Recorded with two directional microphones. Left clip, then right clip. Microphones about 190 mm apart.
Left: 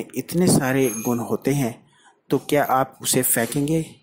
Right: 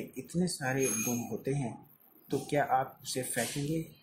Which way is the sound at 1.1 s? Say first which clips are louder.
Left 12 dB; 45° left (ahead or behind).